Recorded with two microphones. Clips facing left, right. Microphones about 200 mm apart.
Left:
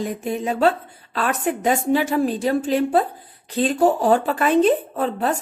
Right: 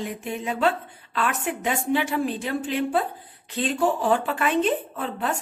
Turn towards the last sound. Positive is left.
turn(degrees=40)  # may be behind; listen again after turning